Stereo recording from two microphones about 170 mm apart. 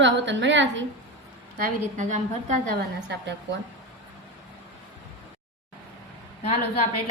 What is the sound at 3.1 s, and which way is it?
Speech, 90° right.